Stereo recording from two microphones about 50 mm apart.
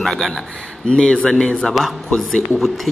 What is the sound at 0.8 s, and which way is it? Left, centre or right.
Speech, centre.